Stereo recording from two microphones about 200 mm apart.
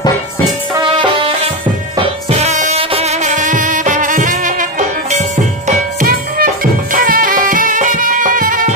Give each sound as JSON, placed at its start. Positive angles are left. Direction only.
{"t": 0.7, "sound": "music", "side_deg": -25}